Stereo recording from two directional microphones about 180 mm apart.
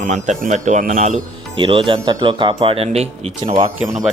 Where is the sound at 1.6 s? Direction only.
30° right (ahead or behind).